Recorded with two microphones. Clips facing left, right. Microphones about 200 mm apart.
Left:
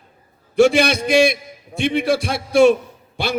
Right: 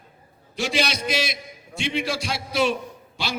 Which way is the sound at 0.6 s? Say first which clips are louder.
Left 12 dB; 55° left (ahead or behind).